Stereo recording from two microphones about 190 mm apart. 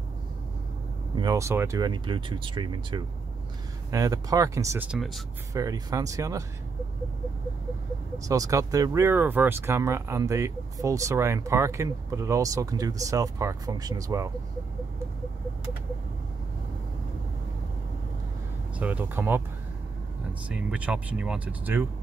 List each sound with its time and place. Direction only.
1.1 s speech: 20° right (ahead or behind)
4.8 s speech: centre (ahead or behind)
5.5 s speech: 20° right (ahead or behind)
8.3 s speech: 15° right (ahead or behind)
18.8 s speech: 10° right (ahead or behind)
20.4 s speech: 5° right (ahead or behind)